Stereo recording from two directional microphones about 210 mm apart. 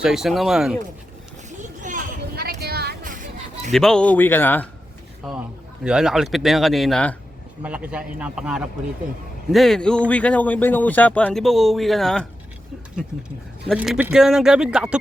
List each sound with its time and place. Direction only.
0.0 s speech: centre (ahead or behind)
1.5 s a sound: 40° right (ahead or behind)
3.7 s speech: centre (ahead or behind)
5.2 s speech: centre (ahead or behind)
13.7 s speech: 5° right (ahead or behind)